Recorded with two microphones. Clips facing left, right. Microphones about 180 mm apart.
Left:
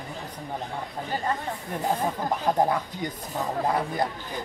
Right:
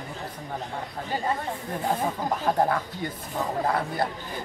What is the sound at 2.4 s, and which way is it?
Speech, 15° left (ahead or behind).